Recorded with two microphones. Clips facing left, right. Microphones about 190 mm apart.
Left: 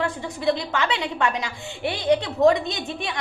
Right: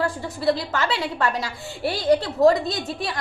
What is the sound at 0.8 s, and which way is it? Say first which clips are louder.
Speech: even; 20° left (ahead or behind).